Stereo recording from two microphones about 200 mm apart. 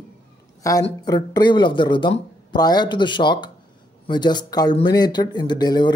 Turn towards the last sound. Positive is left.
turn(degrees=20)  # may be behind; listen again after turning